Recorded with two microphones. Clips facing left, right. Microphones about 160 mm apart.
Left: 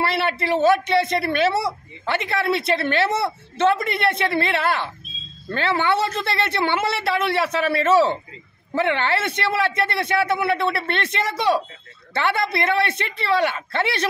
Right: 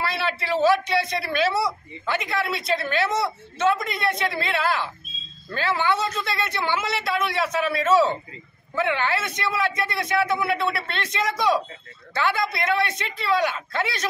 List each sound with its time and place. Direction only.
0.1 s speech: 60° left (ahead or behind)